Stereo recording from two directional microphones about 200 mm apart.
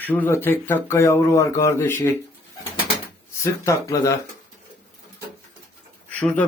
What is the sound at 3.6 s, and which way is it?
Speech, 15° left (ahead or behind).